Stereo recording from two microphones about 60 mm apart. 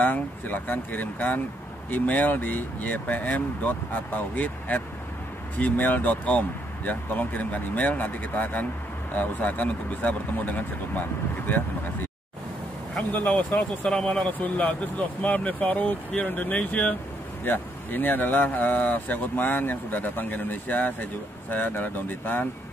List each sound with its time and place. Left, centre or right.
0.0 s speech: left
13.1 s speech: left
13.5 s speech: centre
17.5 s speech: left